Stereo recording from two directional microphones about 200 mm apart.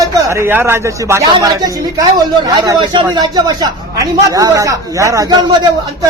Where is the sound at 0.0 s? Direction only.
15° right (ahead or behind).